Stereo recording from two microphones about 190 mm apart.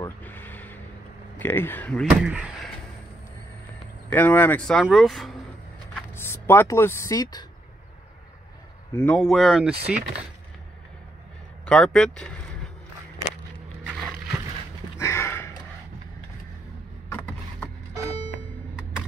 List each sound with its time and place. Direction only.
0.0 s vehicle: 10° left (ahead or behind)
1.4 s speech: 10° left (ahead or behind)
4.1 s speech: 10° left (ahead or behind)
6.1 s speech: 10° left (ahead or behind)
8.9 s speech: 5° left (ahead or behind)
11.6 s speech: 5° left (ahead or behind)
13.8 s a sound: 5° left (ahead or behind)
15.0 s sniff: 15° left (ahead or behind)
17.1 s a sound: 10° left (ahead or behind)